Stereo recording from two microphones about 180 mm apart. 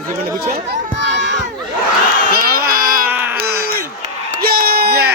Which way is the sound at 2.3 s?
55° right (ahead or behind).